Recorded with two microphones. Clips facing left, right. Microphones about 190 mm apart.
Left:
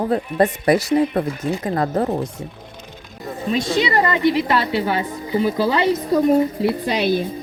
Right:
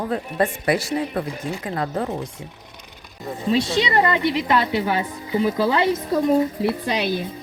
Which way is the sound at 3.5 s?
25° right (ahead or behind).